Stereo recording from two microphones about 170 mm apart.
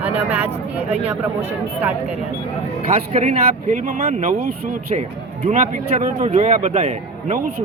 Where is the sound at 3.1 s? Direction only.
45° right (ahead or behind).